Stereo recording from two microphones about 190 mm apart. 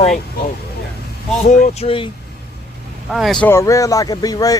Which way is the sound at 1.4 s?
40° left (ahead or behind).